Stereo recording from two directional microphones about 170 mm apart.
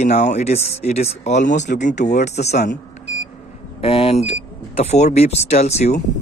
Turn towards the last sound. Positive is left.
turn(degrees=40)  # may be behind; listen again after turning